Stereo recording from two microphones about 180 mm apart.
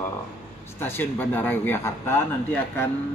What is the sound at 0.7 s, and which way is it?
Speech, 10° left (ahead or behind).